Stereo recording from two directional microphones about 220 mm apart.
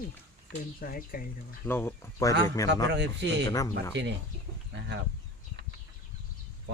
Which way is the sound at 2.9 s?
50° right (ahead or behind).